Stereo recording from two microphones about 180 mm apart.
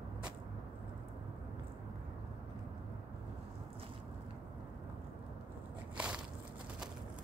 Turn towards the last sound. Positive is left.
turn(degrees=-5)  # may be behind; listen again after turning